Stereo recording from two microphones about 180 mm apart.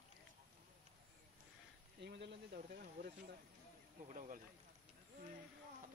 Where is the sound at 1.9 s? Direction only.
70° right (ahead or behind).